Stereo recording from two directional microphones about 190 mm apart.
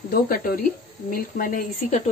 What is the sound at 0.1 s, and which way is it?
Speech, 55° left (ahead or behind).